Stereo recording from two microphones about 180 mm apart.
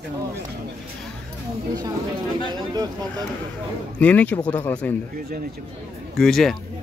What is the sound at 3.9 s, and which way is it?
Speech, 5° left (ahead or behind).